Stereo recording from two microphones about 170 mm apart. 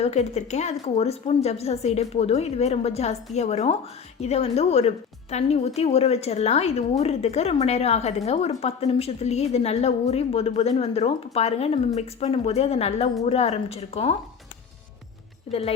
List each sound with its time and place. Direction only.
0.0 s a woman's voice: 40° left (ahead or behind)
15.4 s speech: 35° left (ahead or behind)